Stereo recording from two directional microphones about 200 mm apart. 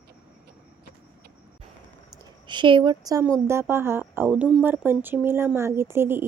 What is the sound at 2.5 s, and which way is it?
Speech, 25° right (ahead or behind).